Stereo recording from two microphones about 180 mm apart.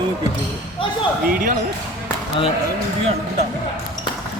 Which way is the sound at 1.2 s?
50° right (ahead or behind).